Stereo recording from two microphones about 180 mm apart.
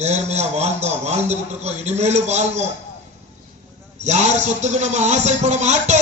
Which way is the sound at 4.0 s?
40° right (ahead or behind).